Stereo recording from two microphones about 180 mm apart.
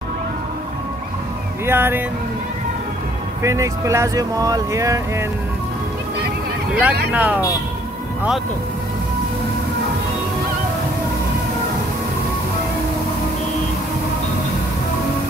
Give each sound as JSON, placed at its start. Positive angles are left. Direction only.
{"t": 1.7, "sound": "speech", "side_deg": -10}
{"t": 3.4, "sound": "speech", "side_deg": -15}
{"t": 6.7, "sound": "speech", "side_deg": -5}